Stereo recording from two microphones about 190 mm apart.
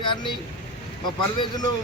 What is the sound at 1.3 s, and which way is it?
Speech, 20° left (ahead or behind).